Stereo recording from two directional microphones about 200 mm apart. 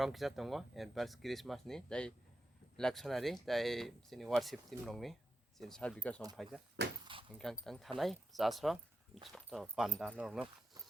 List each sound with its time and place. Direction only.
0.0 s speech: centre (ahead or behind)
6.8 s speech: 60° right (ahead or behind)
7.3 s speech: centre (ahead or behind)